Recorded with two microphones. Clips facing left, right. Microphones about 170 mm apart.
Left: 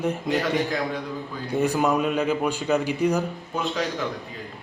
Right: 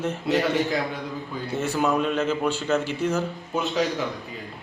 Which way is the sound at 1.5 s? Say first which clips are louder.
Left 2 dB; 15° left (ahead or behind).